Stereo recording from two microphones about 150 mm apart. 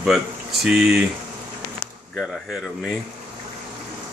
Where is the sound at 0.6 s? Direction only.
5° right (ahead or behind).